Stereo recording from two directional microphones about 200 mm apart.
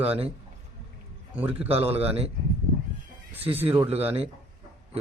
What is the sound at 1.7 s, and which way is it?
Speech, 30° right (ahead or behind).